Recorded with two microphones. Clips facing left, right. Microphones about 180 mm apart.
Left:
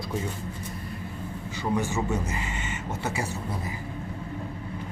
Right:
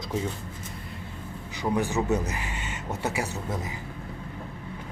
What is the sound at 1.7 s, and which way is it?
A man's voice, 15° right (ahead or behind).